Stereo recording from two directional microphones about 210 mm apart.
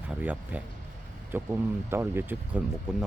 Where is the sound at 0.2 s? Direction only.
5° right (ahead or behind).